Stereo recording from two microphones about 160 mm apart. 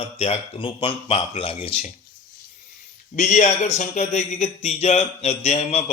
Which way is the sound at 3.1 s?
45° left (ahead or behind).